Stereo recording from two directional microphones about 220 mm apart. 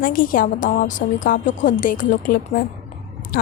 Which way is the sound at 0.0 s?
40° left (ahead or behind).